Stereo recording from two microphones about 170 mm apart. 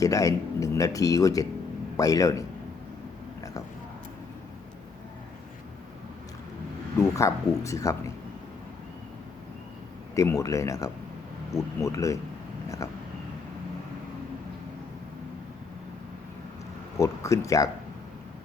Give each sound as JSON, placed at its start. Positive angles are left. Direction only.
{"t": 0.0, "sound": "speech", "side_deg": 20}
{"t": 7.0, "sound": "speech", "side_deg": 15}
{"t": 10.2, "sound": "speech", "side_deg": 20}
{"t": 17.0, "sound": "speech", "side_deg": 20}